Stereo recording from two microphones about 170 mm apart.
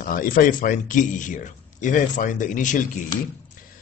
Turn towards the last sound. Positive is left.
turn(degrees=50)  # may be behind; listen again after turning